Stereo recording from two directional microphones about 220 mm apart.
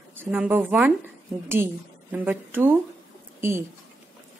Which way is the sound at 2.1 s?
10° right (ahead or behind).